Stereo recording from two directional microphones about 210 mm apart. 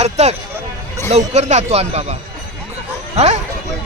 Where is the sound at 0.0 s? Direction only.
30° right (ahead or behind).